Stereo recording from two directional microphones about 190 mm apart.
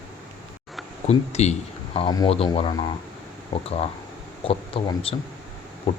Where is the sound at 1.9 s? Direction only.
20° left (ahead or behind).